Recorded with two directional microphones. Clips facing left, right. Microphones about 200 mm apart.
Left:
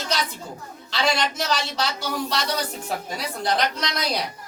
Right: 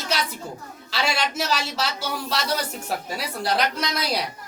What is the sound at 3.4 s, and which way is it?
Speech, 5° right (ahead or behind).